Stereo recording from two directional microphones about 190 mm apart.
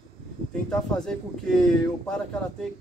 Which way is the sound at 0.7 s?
5° left (ahead or behind).